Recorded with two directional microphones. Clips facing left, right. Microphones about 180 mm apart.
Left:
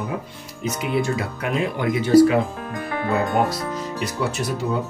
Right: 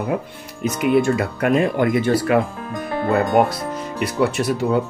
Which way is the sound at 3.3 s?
60° right (ahead or behind).